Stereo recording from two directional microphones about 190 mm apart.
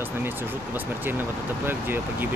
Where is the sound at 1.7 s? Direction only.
10° right (ahead or behind).